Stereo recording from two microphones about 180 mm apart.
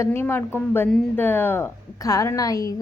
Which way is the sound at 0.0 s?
15° left (ahead or behind).